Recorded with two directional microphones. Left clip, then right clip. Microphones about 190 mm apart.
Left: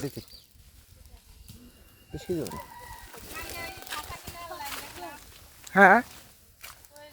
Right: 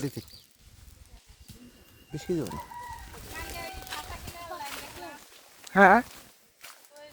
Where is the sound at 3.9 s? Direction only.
55° left (ahead or behind).